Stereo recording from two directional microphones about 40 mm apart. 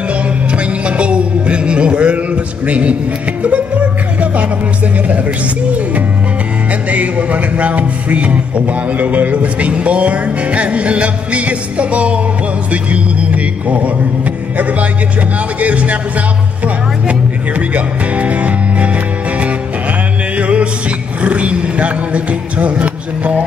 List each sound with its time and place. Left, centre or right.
0.8 s a sound: right
6.9 s a man's voice: right
12.9 s a sound: right
14.6 s a man's voice: right
16.6 s music: right
20.3 s music: right